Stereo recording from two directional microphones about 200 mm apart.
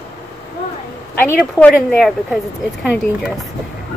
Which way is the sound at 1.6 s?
5° left (ahead or behind).